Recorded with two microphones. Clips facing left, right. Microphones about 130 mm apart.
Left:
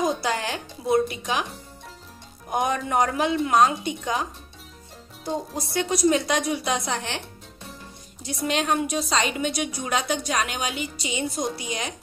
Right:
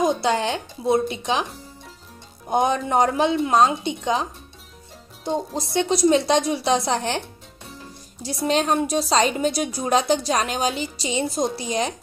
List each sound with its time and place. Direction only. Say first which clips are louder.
0.0 s speech: right 4 dB; 25° right (ahead or behind)
2.4 s a woman's voice: right 4 dB; 25° right (ahead or behind)